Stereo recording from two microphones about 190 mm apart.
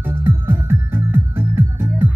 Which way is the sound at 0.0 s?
10° right (ahead or behind).